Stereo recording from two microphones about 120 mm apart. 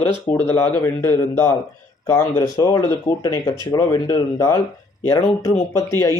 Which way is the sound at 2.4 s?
35° left (ahead or behind).